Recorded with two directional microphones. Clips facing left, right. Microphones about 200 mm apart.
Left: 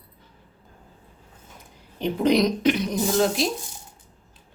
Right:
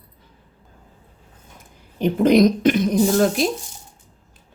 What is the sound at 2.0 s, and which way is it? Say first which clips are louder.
Speech: right 6 dB; 50° right (ahead or behind).